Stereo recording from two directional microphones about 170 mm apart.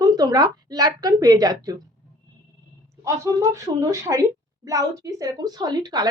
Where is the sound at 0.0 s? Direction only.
25° right (ahead or behind).